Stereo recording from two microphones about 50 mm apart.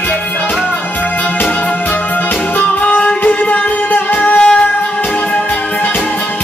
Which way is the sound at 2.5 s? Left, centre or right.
Left.